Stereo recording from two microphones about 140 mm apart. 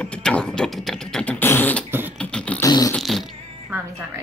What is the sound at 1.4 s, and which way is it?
Beatboxing, 15° left (ahead or behind).